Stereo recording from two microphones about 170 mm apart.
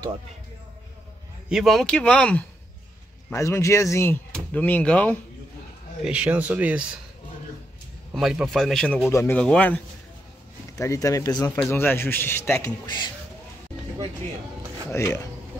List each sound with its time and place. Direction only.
1.5 s speech: centre (ahead or behind)
3.3 s speech: 15° left (ahead or behind)
6.0 s speech: 5° right (ahead or behind)
8.1 s speech: centre (ahead or behind)
10.8 s speech: 20° left (ahead or behind)
12.8 s speech: 25° left (ahead or behind)
14.9 s speech: 20° left (ahead or behind)